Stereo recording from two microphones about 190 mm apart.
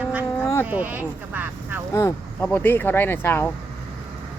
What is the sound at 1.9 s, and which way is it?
Speech, 15° left (ahead or behind).